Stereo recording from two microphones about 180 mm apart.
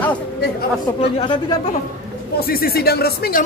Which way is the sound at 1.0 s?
30° left (ahead or behind).